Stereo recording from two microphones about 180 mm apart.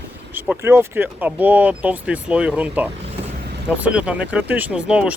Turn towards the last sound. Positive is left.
turn(degrees=-5)  # may be behind; listen again after turning